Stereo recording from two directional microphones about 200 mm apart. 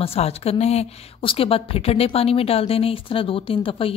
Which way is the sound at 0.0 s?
30° left (ahead or behind).